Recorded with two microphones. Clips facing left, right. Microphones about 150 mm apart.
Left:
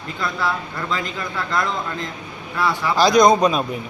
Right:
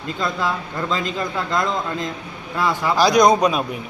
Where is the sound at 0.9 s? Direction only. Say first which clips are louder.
Right 3 dB; 20° right (ahead or behind).